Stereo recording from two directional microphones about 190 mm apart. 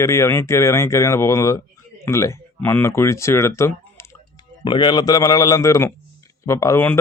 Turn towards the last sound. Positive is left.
turn(degrees=10)  # may be behind; listen again after turning